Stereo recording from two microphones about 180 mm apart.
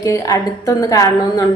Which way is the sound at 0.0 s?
15° left (ahead or behind).